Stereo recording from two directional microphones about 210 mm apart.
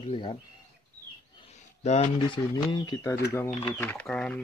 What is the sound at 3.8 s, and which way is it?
Speech, 5° left (ahead or behind).